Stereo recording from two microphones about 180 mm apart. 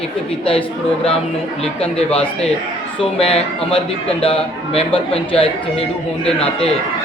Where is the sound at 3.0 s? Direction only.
30° left (ahead or behind).